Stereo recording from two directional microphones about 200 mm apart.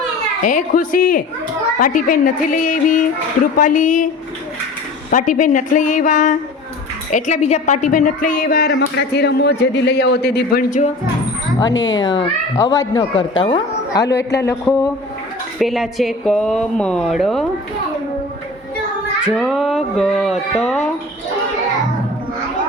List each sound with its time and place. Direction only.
0.4 s a woman's voice: 40° left (ahead or behind)
5.1 s a woman's voice: 40° left (ahead or behind)
11.7 s speech: 70° left (ahead or behind)
11.9 s a child's voice: 20° left (ahead or behind)
14.0 s a man's voice: 55° left (ahead or behind)
14.4 s speech: 15° left (ahead or behind)
15.5 s speech: centre (ahead or behind)
19.2 s speech: centre (ahead or behind)